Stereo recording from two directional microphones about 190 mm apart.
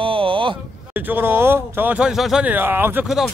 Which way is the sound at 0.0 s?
30° right (ahead or behind).